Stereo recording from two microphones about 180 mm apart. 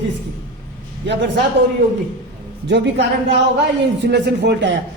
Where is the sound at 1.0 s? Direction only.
75° right (ahead or behind).